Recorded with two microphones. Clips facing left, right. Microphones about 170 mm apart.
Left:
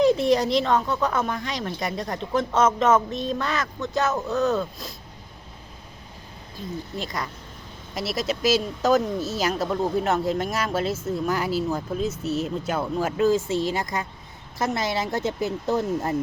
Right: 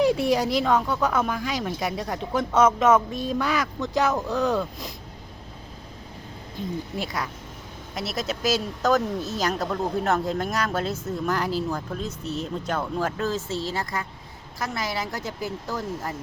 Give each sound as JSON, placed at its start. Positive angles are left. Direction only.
{"t": 0.0, "sound": "speech", "side_deg": -10}
{"t": 6.9, "sound": "speech", "side_deg": -10}